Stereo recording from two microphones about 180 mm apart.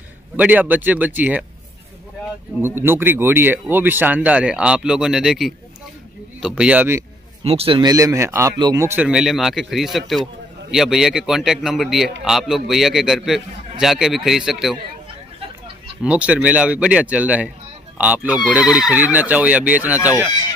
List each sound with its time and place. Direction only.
0.4 s speech: 10° right (ahead or behind)
2.6 s speech: 15° right (ahead or behind)
7.4 s a man's voice: 30° right (ahead or behind)
7.9 s speech: 20° right (ahead or behind); by 14.8 s centre (ahead or behind)
16.0 s speech: 5° right (ahead or behind)